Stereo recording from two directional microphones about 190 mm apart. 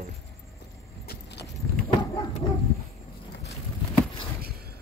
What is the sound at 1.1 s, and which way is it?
Vehicle, 60° left (ahead or behind).